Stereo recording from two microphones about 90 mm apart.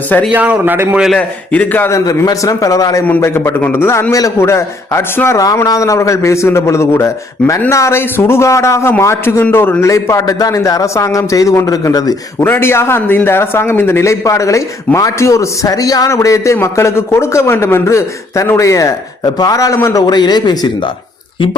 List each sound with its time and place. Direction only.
0.3 s a man's voice: 15° right (ahead or behind)
1.1 s a man's voice: 15° left (ahead or behind)
1.9 s a man's voice: 40° left (ahead or behind)
3.2 s a man's voice: 30° left (ahead or behind)
9.8 s a man's voice: 35° left (ahead or behind)
12.4 s a man's voice: 25° left (ahead or behind)
20.1 s speech: 50° left (ahead or behind)